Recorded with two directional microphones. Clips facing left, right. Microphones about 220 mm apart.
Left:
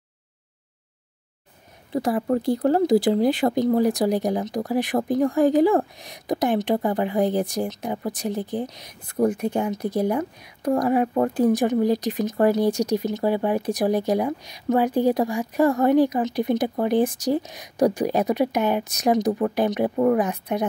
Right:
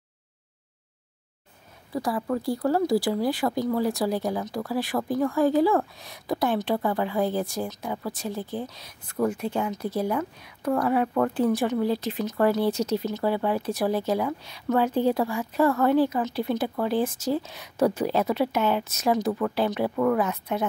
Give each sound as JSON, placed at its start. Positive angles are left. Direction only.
{"t": 1.9, "sound": "speech", "side_deg": 25}